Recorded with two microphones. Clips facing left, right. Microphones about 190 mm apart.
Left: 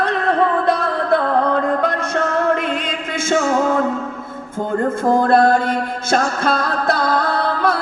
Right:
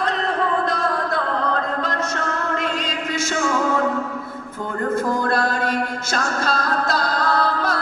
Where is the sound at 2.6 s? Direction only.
55° left (ahead or behind).